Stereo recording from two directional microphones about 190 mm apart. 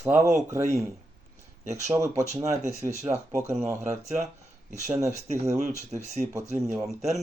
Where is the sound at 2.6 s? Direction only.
40° right (ahead or behind).